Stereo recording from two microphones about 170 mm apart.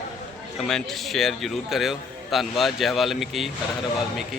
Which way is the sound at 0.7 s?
Centre (ahead or behind).